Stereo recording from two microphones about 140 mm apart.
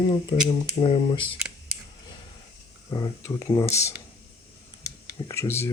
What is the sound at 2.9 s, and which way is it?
Speech, 25° left (ahead or behind).